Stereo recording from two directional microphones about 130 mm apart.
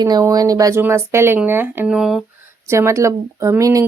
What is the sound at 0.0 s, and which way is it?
Speech, 30° right (ahead or behind).